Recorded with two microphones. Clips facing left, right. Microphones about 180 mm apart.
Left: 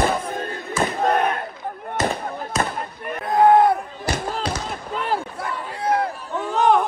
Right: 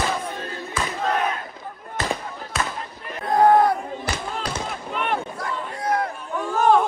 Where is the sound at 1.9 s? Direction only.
45° left (ahead or behind).